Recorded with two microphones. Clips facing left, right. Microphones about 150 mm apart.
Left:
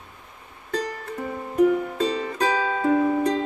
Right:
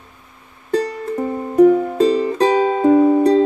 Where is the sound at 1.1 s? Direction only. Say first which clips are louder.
Right 8 dB; 35° right (ahead or behind).